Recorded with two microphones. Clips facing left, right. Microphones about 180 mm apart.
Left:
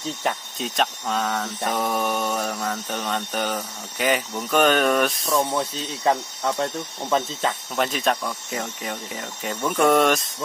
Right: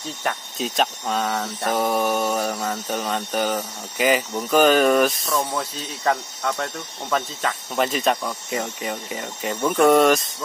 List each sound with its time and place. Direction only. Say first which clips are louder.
0.6 s speech: right 2 dB; centre (ahead or behind)
6.6 s speech: left 3 dB; 25° left (ahead or behind)
7.7 s speech: right 4 dB; centre (ahead or behind)